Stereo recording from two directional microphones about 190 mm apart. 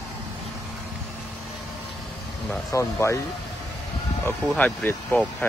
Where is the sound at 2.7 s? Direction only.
15° left (ahead or behind).